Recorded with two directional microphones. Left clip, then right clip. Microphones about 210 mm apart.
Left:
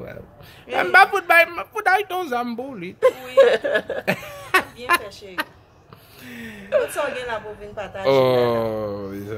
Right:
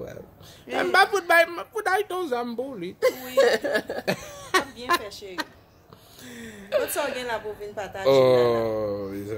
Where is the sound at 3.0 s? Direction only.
15° right (ahead or behind).